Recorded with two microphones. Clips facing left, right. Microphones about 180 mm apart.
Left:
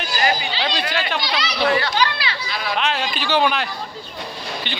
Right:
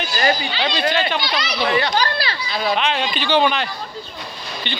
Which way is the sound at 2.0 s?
40° right (ahead or behind).